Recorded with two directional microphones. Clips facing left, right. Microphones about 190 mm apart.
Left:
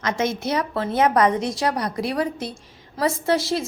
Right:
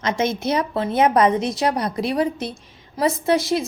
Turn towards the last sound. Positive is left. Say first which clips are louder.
# right 2 dB
turn(degrees=-15)  # may be behind; listen again after turning